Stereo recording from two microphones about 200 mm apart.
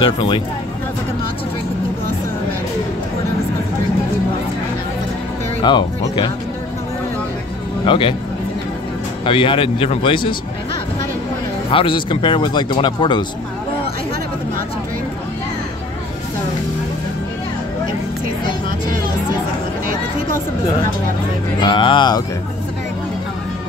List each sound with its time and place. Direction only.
0.0 s speech: 20° left (ahead or behind)
5.6 s speech: 20° left (ahead or behind)
7.8 s speech: 25° left (ahead or behind)
9.2 s speech: 25° left (ahead or behind)
11.7 s speech: 25° left (ahead or behind)
21.5 s speech: 25° left (ahead or behind)